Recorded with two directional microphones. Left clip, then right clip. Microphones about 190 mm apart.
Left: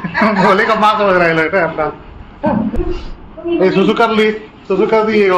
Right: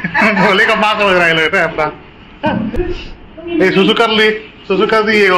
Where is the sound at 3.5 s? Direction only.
5° right (ahead or behind).